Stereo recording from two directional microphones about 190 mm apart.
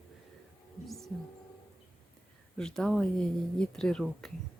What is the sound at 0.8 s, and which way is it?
Speech, centre (ahead or behind).